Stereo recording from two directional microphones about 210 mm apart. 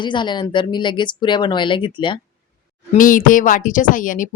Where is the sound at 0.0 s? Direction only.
20° left (ahead or behind).